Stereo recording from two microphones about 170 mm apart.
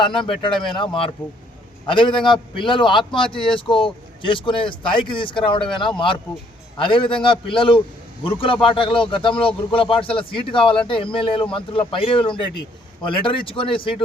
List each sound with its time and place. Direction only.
0.3 s a man's voice: 30° left (ahead or behind)
6.7 s a man's voice: 30° left (ahead or behind)